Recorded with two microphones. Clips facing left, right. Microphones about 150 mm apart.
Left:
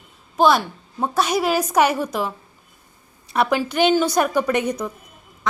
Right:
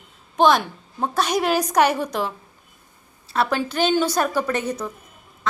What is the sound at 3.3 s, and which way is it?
A woman's voice, 15° left (ahead or behind).